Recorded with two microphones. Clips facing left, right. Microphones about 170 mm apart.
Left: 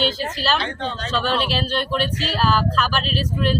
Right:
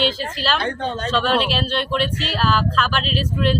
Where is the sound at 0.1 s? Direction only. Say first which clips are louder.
Left 1 dB; 30° right (ahead or behind).